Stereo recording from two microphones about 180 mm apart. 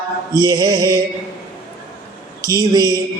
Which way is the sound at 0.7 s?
15° left (ahead or behind).